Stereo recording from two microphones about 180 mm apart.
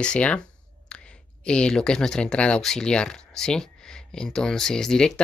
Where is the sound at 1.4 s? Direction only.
5° left (ahead or behind).